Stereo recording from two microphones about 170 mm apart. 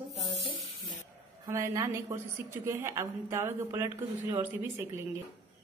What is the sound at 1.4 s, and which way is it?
A woman's voice, 20° right (ahead or behind).